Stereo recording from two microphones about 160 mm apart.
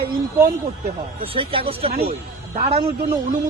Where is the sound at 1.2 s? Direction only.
35° right (ahead or behind).